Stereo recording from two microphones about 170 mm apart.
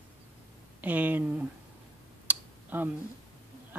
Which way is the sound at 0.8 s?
10° right (ahead or behind).